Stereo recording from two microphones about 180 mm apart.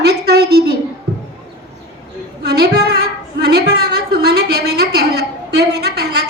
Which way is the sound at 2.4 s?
65° right (ahead or behind).